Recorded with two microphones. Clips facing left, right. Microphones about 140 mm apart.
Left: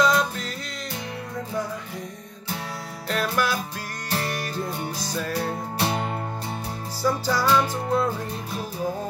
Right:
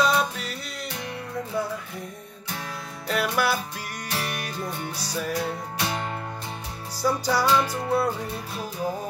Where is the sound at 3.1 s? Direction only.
10° right (ahead or behind).